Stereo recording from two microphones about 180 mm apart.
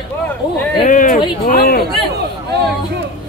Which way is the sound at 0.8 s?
45° left (ahead or behind).